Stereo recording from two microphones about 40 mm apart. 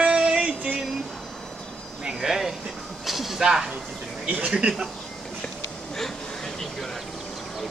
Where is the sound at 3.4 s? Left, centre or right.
Right.